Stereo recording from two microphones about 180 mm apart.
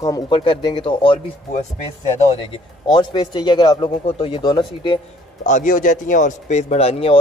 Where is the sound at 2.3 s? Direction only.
30° left (ahead or behind).